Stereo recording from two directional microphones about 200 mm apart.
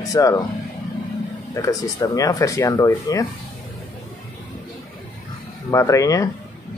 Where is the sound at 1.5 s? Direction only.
15° left (ahead or behind).